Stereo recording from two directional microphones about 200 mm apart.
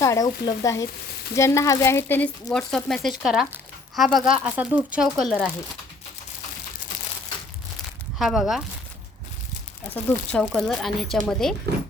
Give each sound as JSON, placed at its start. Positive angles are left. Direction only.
{"t": 0.0, "sound": "speech", "side_deg": 15}
{"t": 8.2, "sound": "speech", "side_deg": 0}
{"t": 9.9, "sound": "speech", "side_deg": 5}